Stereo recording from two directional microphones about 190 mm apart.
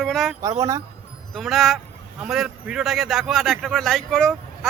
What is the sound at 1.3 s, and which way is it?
A man's voice, centre (ahead or behind).